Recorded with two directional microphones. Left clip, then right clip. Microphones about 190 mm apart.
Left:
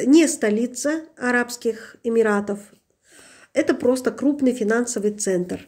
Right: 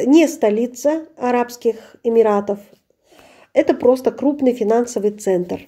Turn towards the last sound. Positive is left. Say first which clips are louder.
# right 4 dB
turn(degrees=-5)  # may be behind; listen again after turning